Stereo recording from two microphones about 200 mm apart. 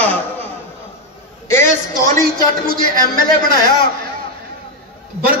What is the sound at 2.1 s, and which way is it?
Speech, 45° right (ahead or behind).